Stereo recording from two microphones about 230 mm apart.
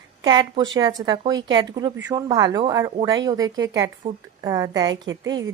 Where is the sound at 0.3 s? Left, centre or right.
Centre.